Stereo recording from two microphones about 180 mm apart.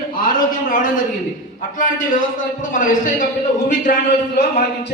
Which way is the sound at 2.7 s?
45° left (ahead or behind).